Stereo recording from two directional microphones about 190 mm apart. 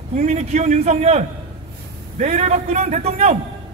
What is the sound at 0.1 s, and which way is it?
A man's voice, 35° right (ahead or behind).